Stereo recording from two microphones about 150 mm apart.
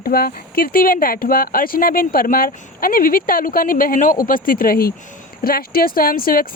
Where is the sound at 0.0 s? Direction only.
80° left.